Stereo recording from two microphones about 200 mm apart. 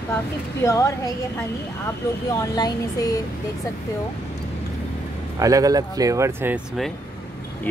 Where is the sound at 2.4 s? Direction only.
20° left (ahead or behind).